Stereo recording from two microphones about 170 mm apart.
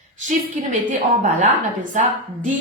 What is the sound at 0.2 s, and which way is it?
A woman's voice, 50° right (ahead or behind).